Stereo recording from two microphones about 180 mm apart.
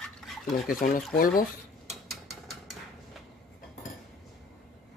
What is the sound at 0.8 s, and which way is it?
Speech, 50° left (ahead or behind).